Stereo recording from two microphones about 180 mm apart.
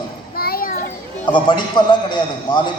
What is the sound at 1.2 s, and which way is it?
A man's voice, 25° left (ahead or behind).